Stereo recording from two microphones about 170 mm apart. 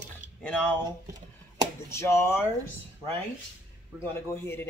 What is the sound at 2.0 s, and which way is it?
Speech, 15° left (ahead or behind).